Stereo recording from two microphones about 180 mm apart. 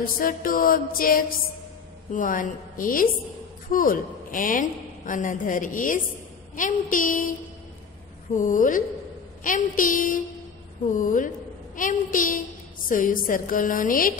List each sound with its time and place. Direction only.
0.1 s a woman's voice: 50° left (ahead or behind)
8.4 s a woman's voice: 50° left (ahead or behind)